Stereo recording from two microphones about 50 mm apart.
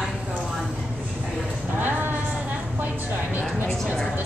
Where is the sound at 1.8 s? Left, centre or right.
Right.